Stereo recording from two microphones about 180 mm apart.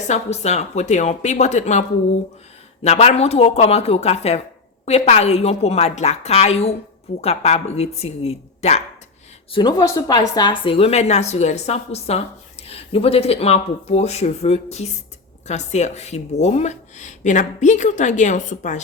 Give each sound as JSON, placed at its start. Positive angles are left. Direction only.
{"t": 0.1, "sound": "a woman's voice", "side_deg": 40}
{"t": 2.8, "sound": "a woman's voice", "side_deg": 35}
{"t": 9.5, "sound": "a woman's voice", "side_deg": 25}